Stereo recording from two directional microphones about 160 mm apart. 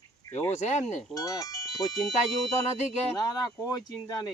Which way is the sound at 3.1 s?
25° left (ahead or behind).